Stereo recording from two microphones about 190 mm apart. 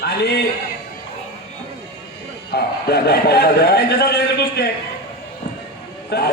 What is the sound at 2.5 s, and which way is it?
A man's voice, 55° left (ahead or behind).